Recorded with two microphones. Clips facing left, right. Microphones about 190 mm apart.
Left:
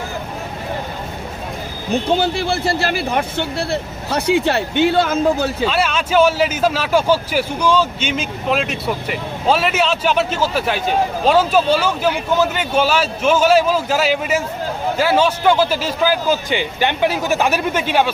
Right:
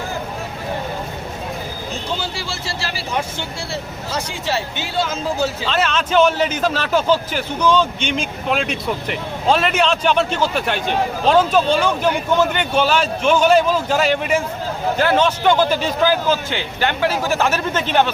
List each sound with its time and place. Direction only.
1.9 s speech: 60° left (ahead or behind)
5.6 s a man's voice: 10° left (ahead or behind)